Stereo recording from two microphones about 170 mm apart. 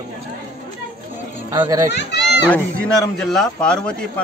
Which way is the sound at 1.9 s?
90° left.